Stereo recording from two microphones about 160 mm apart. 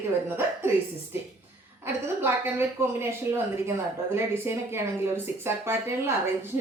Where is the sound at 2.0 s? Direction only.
15° right (ahead or behind).